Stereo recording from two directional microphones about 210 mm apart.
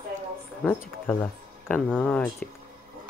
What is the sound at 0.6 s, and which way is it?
Speech, 5° left (ahead or behind).